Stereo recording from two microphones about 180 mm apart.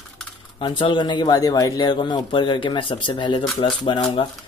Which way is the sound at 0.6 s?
25° left (ahead or behind).